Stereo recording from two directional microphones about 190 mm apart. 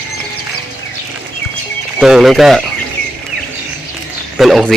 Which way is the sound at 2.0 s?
Centre (ahead or behind).